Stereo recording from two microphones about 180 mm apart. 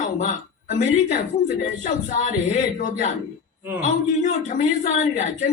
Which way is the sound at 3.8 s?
40° left (ahead or behind).